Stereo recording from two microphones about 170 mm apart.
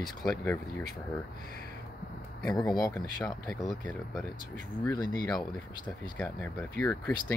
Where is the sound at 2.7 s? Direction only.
5° left (ahead or behind).